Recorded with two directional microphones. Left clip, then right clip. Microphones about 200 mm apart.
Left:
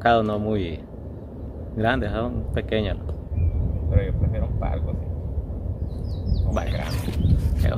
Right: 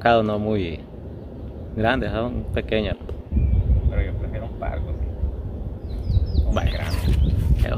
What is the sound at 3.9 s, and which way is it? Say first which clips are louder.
Vehicle: left 6 dB; 15° left (ahead or behind).